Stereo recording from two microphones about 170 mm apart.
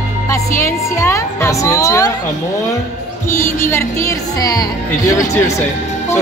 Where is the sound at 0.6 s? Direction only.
15° left (ahead or behind).